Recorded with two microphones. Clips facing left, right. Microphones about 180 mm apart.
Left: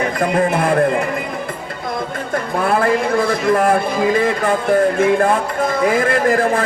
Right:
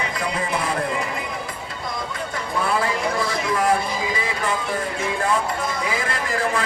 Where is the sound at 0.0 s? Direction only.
55° left (ahead or behind).